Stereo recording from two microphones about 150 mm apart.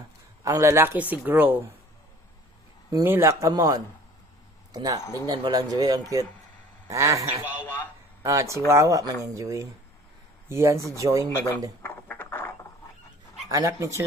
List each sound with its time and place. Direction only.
0.4 s speech: 20° right (ahead or behind)
2.9 s speech: 15° right (ahead or behind)
7.6 s a man's voice: 15° left (ahead or behind)
8.2 s speech: 20° right (ahead or behind)
11.2 s a man's voice: 15° left (ahead or behind)
11.8 s a sound: 15° left (ahead or behind)
13.5 s speech: 20° right (ahead or behind)